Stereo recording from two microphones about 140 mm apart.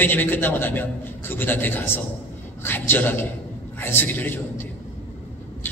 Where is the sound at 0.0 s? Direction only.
15° left (ahead or behind).